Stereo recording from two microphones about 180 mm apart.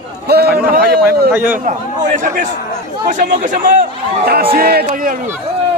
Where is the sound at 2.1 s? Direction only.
45° right (ahead or behind).